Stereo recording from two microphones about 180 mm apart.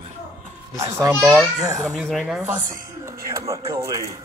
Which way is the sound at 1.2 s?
Centre (ahead or behind).